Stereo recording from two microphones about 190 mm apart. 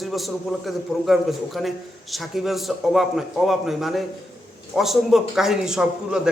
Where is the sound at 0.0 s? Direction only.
Centre (ahead or behind).